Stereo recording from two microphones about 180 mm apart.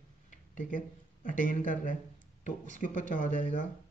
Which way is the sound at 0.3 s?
45° left (ahead or behind).